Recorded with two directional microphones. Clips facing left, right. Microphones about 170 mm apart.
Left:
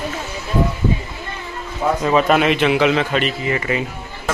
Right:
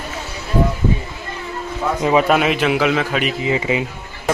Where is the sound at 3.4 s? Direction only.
15° right (ahead or behind).